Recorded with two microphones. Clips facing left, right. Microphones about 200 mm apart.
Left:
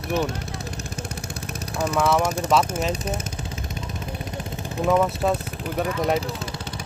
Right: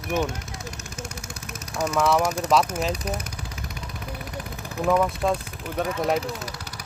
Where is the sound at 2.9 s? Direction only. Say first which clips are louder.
Left 2 dB; 25° left (ahead or behind).